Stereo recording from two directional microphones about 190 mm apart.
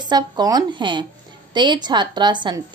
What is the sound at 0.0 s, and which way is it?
A woman's voice, 20° right (ahead or behind).